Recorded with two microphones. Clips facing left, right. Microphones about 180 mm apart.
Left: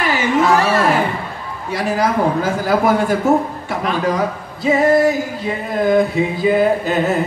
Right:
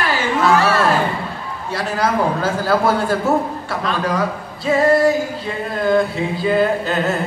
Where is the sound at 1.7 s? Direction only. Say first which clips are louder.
Left 2 dB; 15° left (ahead or behind).